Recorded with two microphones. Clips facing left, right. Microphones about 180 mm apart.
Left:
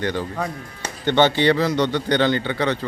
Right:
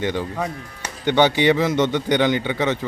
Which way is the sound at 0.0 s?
20° right (ahead or behind).